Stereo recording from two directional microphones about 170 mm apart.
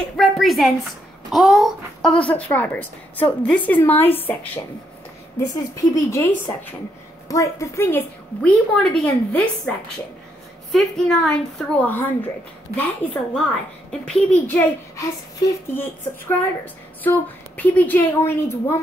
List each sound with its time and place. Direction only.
0.0 s a woman's voice: centre (ahead or behind)